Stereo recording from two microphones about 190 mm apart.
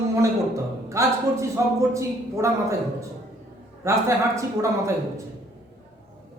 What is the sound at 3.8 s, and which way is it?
Speech, 15° right (ahead or behind).